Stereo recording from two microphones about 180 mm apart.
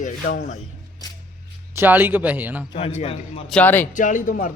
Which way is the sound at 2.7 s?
35° left (ahead or behind).